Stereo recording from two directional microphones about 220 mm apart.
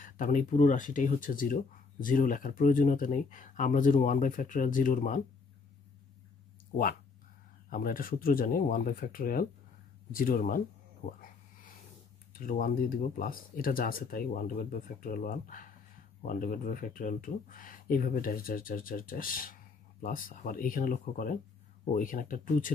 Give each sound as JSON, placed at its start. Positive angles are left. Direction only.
{"t": 0.0, "sound": "speech", "side_deg": 35}
{"t": 7.7, "sound": "speech", "side_deg": 40}
{"t": 11.1, "sound": "a sound", "side_deg": 40}
{"t": 12.4, "sound": "speech", "side_deg": 40}